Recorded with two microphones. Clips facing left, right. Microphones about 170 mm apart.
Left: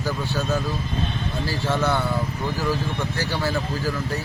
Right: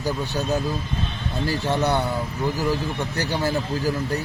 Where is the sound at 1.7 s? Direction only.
20° right (ahead or behind).